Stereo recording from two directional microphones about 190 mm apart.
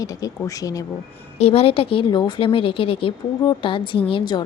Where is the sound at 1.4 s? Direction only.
30° left (ahead or behind).